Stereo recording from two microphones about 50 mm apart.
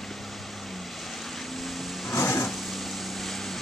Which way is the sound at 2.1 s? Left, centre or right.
Left.